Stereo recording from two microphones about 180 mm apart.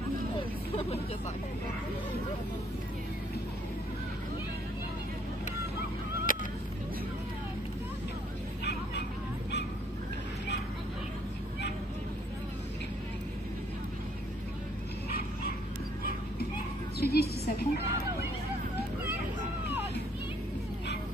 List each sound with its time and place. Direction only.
0.4 s speech: 35° left (ahead or behind)
6.3 s honk: 50° left (ahead or behind)
16.0 s clip-clop: 55° left (ahead or behind)
17.0 s a sound: 60° left (ahead or behind)